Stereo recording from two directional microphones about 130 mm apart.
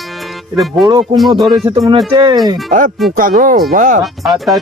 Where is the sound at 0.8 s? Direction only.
35° right (ahead or behind).